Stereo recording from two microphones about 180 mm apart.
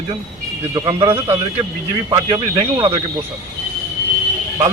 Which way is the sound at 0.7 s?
20° right (ahead or behind).